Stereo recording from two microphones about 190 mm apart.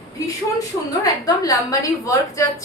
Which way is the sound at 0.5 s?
20° left (ahead or behind).